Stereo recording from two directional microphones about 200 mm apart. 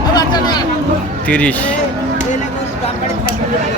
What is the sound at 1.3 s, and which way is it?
Speech, 5° left (ahead or behind).